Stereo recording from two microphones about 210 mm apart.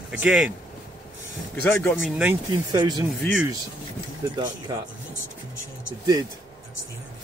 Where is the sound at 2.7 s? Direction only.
20° right (ahead or behind).